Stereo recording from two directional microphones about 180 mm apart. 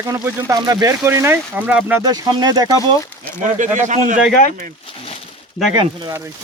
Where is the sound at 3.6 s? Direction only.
45° right (ahead or behind).